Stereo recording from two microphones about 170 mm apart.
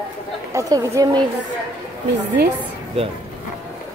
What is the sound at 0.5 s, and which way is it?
Chatter, 20° right (ahead or behind).